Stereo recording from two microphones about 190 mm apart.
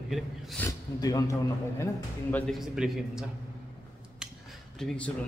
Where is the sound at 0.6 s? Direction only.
15° left (ahead or behind); by 3.3 s 5° right (ahead or behind).